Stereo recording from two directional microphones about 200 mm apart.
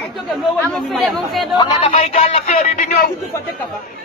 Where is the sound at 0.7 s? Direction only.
Centre (ahead or behind).